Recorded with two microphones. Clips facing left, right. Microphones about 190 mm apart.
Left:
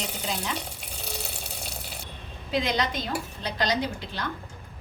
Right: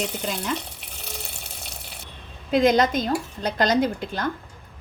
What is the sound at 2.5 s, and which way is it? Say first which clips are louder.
A woman's voice: right 8 dB; 45° right (ahead or behind).